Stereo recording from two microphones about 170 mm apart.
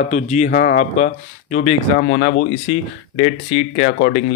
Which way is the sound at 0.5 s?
55° left (ahead or behind).